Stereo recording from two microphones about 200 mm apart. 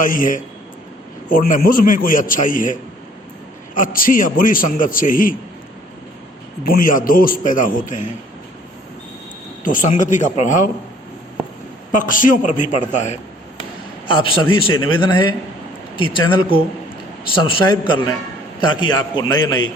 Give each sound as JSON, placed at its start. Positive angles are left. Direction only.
{"t": 0.0, "sound": "a man's voice", "side_deg": 40}
{"t": 3.8, "sound": "a man's voice", "side_deg": 45}
{"t": 6.7, "sound": "a man's voice", "side_deg": 45}
{"t": 9.6, "sound": "a man's voice", "side_deg": 40}
{"t": 11.9, "sound": "a man's voice", "side_deg": 40}
{"t": 14.1, "sound": "a man's voice", "side_deg": 25}